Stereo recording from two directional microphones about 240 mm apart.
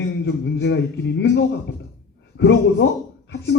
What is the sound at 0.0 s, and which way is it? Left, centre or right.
A man's voice, left.